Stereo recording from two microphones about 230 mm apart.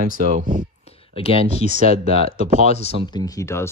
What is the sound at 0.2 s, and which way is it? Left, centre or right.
Speech, right.